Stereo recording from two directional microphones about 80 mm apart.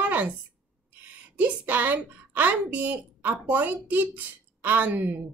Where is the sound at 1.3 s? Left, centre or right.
Right.